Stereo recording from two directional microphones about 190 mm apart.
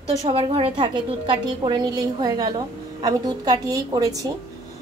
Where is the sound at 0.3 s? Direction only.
30° right (ahead or behind).